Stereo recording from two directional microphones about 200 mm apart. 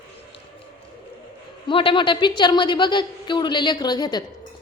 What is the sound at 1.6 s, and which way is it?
A woman's voice, 25° left (ahead or behind).